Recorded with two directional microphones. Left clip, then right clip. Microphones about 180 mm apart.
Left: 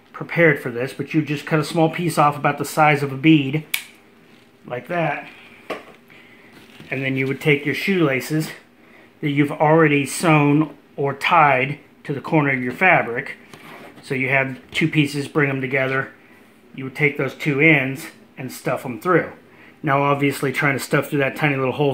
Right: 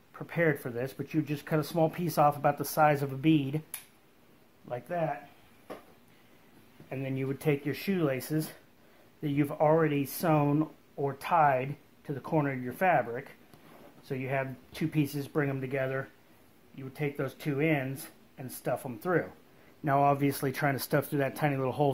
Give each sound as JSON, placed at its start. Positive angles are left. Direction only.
{"t": 0.1, "sound": "speech", "side_deg": -40}
{"t": 4.6, "sound": "speech", "side_deg": -50}
{"t": 6.9, "sound": "speech", "side_deg": -45}